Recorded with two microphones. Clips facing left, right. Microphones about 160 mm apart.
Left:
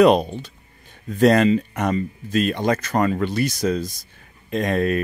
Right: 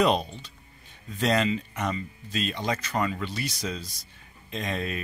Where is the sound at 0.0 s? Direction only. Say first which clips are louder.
Left 9 dB; 55° left (ahead or behind).